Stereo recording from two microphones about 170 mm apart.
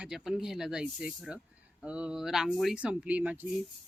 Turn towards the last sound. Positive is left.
turn(degrees=-10)  # may be behind; listen again after turning